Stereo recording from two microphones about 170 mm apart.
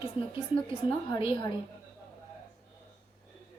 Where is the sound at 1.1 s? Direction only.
30° left (ahead or behind).